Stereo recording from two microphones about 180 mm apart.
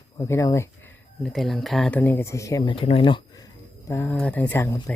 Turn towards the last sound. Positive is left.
turn(degrees=10)  # may be behind; listen again after turning